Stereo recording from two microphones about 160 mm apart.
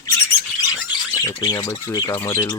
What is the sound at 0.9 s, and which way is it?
Speech, 25° left (ahead or behind).